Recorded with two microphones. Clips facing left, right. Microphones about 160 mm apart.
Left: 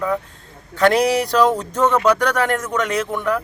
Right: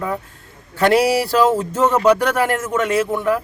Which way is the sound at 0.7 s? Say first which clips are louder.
Right 1 dB; 5° right (ahead or behind).